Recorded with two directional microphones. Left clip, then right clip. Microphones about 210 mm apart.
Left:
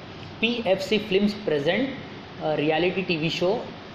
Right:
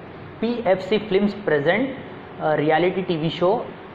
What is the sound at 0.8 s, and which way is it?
Speech, 35° left (ahead or behind).